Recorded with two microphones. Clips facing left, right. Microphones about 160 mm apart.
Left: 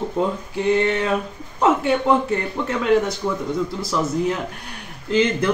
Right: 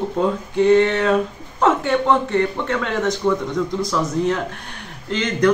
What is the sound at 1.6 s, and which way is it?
Speech, 10° left (ahead or behind).